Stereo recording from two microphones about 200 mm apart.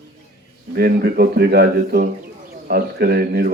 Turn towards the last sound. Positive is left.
turn(degrees=-50)  # may be behind; listen again after turning